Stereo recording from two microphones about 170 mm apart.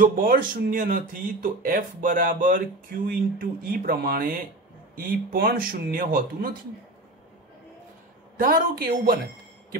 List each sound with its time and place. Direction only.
0.0 s speech: 55° right (ahead or behind)
8.4 s speech: 55° right (ahead or behind)